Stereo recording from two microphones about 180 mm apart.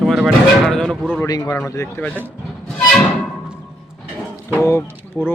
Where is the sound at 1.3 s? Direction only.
20° left (ahead or behind).